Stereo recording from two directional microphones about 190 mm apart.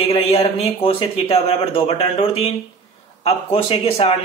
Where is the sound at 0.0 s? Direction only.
30° left (ahead or behind).